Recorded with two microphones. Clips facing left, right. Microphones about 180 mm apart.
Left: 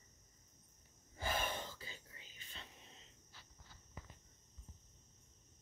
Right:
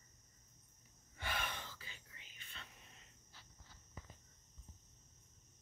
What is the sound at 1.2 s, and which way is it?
Whispering, 35° left (ahead or behind).